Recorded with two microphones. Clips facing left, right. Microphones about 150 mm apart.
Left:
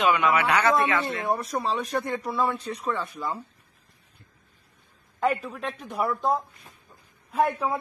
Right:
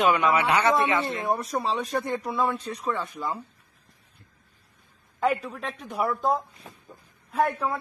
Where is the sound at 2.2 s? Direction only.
15° right (ahead or behind).